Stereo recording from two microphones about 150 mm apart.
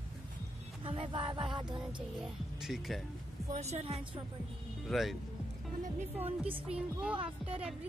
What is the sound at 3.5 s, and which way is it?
Speech, 45° right (ahead or behind).